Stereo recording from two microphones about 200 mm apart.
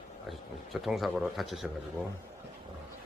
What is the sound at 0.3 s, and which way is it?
A man's voice, centre (ahead or behind).